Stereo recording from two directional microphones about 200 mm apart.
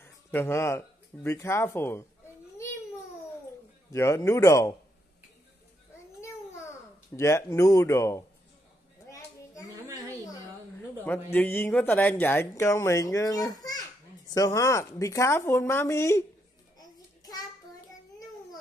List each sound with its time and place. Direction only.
0.0 s speech: 10° left (ahead or behind)
3.9 s speech: 15° left (ahead or behind)
6.2 s babbling: 15° left (ahead or behind)
7.2 s speech: 15° left (ahead or behind)
11.1 s speech: 10° left (ahead or behind)
16.7 s babbling: 20° left (ahead or behind)